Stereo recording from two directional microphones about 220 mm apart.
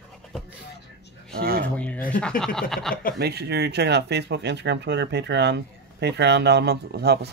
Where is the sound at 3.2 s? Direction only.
45° right (ahead or behind).